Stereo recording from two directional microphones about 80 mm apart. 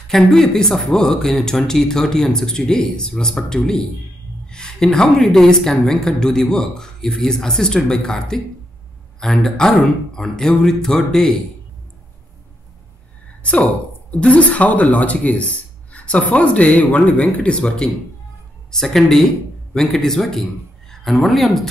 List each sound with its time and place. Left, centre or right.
0.1 s a woman's voice: centre
13.4 s a woman's voice: centre